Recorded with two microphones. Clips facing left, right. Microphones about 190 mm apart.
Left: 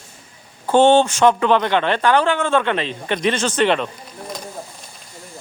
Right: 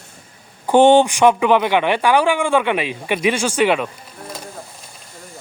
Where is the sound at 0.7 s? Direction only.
15° right (ahead or behind).